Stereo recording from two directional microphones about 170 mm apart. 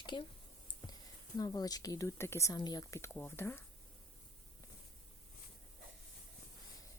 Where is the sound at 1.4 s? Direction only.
20° left (ahead or behind).